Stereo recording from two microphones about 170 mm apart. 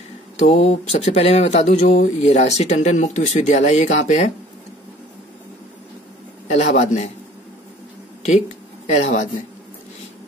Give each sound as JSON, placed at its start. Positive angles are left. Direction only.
{"t": 0.4, "sound": "speech", "side_deg": 40}
{"t": 6.4, "sound": "a man's voice", "side_deg": 40}
{"t": 8.8, "sound": "a man's voice", "side_deg": 45}